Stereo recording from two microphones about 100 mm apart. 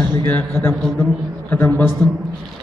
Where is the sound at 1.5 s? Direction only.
20° left (ahead or behind).